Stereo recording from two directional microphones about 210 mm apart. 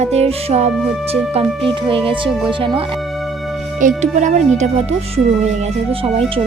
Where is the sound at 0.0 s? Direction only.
30° right (ahead or behind).